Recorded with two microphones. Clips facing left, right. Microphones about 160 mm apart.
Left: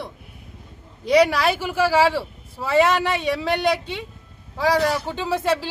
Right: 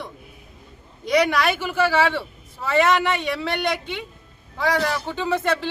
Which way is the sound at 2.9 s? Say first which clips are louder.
Right 1 dB; 35° left (ahead or behind).